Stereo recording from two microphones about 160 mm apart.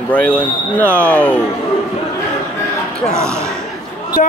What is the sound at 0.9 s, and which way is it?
Speech, 10° left (ahead or behind).